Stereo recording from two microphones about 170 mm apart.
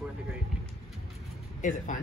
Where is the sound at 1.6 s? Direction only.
50° left (ahead or behind).